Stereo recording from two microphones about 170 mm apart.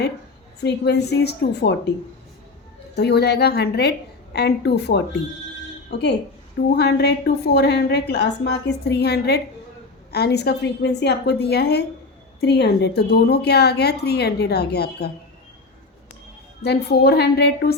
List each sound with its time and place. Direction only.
0.6 s a woman's voice: 85° left
2.9 s a woman's voice: 75° left (ahead or behind)
6.7 s a woman's voice: 75° left (ahead or behind)
16.6 s a woman's voice: 70° left (ahead or behind)